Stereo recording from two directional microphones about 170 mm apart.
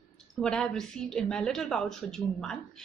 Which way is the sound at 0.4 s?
5° left (ahead or behind).